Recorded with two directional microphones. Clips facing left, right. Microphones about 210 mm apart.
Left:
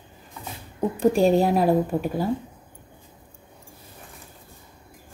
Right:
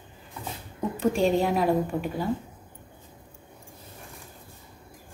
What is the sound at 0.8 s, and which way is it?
Speech, 40° left (ahead or behind).